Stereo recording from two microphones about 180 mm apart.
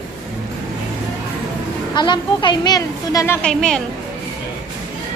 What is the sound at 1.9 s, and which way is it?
A woman's voice, 25° left (ahead or behind).